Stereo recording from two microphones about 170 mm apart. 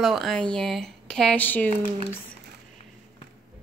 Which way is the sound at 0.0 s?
Centre (ahead or behind).